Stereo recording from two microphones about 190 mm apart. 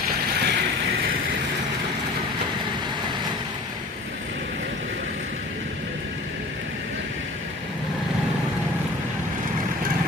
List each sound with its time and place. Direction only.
0.3 s vehicle: 60° right (ahead or behind)